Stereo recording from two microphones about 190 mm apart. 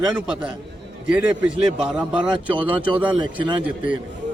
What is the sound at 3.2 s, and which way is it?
Speech, 25° right (ahead or behind).